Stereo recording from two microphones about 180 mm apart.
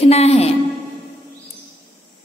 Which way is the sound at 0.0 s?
35° left (ahead or behind).